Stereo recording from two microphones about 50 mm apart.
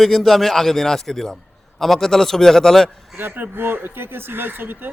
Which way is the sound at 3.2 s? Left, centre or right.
Right.